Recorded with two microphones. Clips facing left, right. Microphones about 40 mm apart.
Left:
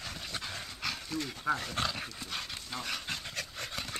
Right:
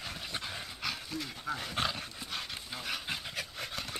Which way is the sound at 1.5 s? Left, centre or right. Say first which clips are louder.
Even; centre.